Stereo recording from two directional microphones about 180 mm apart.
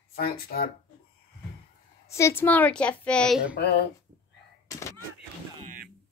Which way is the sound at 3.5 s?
65° left (ahead or behind).